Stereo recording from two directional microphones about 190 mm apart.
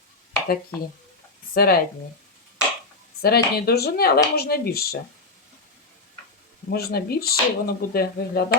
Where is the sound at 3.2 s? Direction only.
55° left (ahead or behind).